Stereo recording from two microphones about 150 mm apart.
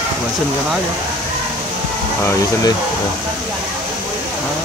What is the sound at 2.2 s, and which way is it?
Speech, 20° left (ahead or behind).